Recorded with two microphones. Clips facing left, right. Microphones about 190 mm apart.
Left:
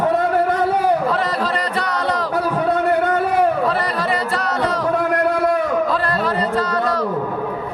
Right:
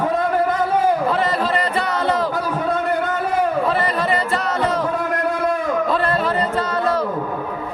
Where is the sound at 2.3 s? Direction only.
65° left (ahead or behind).